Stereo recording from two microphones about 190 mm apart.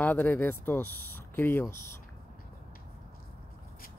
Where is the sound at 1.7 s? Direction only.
15° left (ahead or behind).